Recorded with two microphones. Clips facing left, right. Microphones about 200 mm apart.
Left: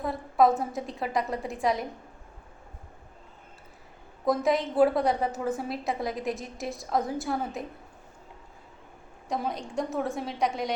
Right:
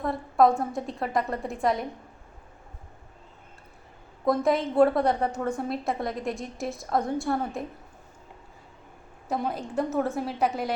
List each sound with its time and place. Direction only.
0.0 s a woman's voice: centre (ahead or behind)
4.3 s a woman's voice: centre (ahead or behind)
9.3 s a woman's voice: 5° right (ahead or behind)